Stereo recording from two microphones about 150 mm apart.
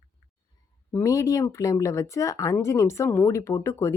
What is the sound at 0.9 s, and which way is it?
Speech, 20° left (ahead or behind).